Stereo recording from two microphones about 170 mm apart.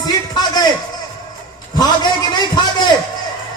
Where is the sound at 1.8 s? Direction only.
25° left (ahead or behind).